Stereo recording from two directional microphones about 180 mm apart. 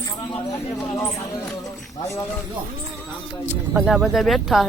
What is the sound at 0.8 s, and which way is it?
Speech, 15° left (ahead or behind).